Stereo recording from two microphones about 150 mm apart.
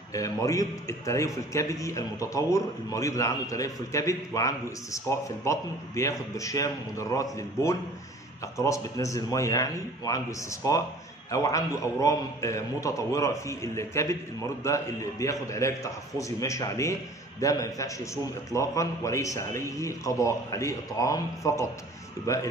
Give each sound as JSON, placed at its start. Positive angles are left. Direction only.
{"t": 0.1, "sound": "a man's voice", "side_deg": 20}